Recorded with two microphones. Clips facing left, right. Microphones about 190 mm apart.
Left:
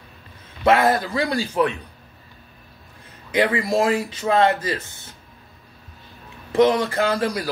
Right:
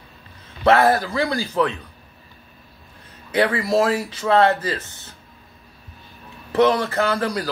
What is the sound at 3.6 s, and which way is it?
A man's voice, 15° left (ahead or behind).